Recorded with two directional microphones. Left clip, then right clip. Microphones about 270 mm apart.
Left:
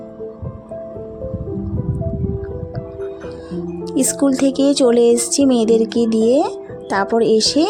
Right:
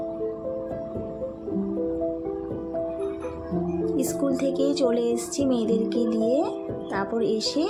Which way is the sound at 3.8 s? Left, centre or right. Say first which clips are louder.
Left 9 dB; left.